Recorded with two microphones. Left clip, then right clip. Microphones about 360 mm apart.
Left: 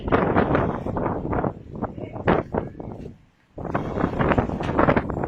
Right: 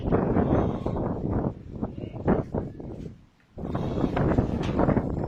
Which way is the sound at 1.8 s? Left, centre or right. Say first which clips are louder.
Left 5 dB; left.